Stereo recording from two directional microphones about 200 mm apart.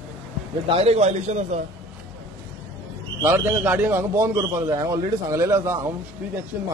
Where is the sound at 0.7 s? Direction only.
30° right (ahead or behind).